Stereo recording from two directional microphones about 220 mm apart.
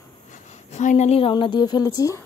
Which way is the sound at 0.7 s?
30° left (ahead or behind).